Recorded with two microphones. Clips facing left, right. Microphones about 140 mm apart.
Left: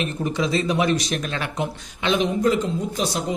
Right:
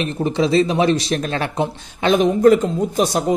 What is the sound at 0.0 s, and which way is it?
Speech, 30° right (ahead or behind).